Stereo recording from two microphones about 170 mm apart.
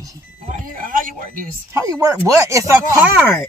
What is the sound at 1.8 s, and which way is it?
Speech, 20° right (ahead or behind).